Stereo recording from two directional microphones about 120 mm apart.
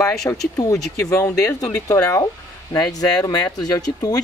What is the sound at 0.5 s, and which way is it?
Speech, 25° left (ahead or behind).